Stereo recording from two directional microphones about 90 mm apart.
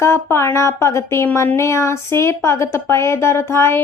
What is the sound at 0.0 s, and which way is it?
Speech, 30° left (ahead or behind).